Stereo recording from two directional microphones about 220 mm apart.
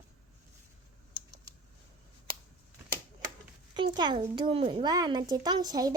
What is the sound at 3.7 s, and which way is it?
A child's voice, 20° right (ahead or behind).